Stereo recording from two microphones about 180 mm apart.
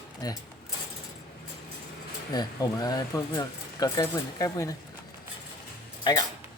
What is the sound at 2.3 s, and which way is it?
Speech, 20° left (ahead or behind).